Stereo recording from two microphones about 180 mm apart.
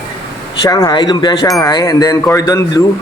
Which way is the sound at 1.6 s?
20° left (ahead or behind).